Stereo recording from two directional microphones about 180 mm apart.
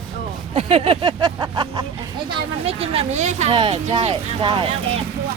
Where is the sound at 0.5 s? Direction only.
30° right (ahead or behind).